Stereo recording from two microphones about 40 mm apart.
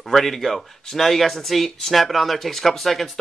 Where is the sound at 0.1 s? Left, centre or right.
Centre.